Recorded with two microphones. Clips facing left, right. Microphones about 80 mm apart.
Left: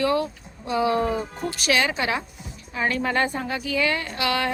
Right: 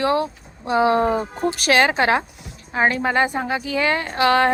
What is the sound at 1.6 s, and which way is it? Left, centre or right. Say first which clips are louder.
Speech: right 5 dB; right.